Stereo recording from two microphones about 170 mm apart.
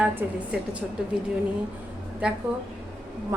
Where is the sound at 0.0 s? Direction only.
10° right (ahead or behind).